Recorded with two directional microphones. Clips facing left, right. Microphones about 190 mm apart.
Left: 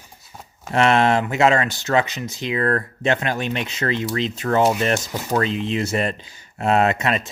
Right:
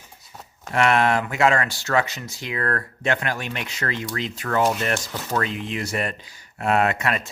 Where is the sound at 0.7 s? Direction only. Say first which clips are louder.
Left 3 dB; 25° left (ahead or behind).